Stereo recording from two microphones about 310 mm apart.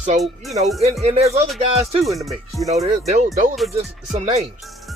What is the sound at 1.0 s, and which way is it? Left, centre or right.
Music, centre.